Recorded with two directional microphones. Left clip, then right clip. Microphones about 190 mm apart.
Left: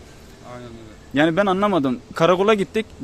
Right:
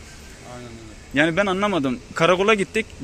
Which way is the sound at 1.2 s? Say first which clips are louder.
Left 2 dB; 25° left (ahead or behind).